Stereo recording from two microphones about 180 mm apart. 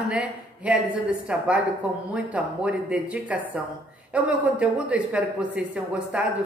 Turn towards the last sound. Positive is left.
turn(degrees=-5)  # may be behind; listen again after turning